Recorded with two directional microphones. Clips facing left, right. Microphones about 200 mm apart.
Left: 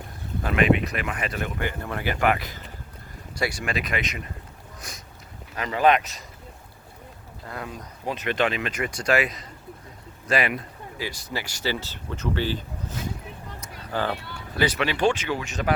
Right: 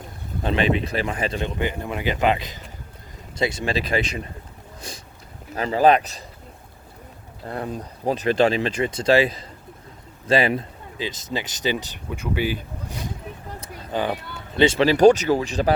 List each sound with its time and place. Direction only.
0.4 s speech: 30° right (ahead or behind)
5.5 s speech: 35° right (ahead or behind)
7.4 s speech: 35° right (ahead or behind)